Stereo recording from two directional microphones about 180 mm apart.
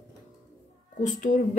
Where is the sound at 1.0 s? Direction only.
45° left (ahead or behind).